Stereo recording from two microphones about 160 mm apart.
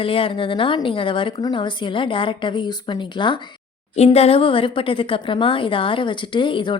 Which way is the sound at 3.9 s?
40° left (ahead or behind).